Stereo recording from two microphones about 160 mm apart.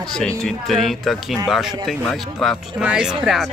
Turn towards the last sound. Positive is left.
turn(degrees=-5)  # may be behind; listen again after turning